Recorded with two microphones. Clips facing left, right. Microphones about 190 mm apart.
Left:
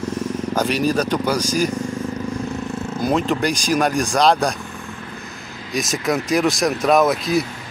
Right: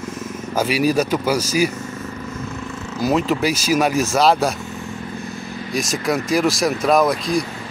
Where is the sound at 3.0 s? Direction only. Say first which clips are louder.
Right 1 dB; 5° right (ahead or behind).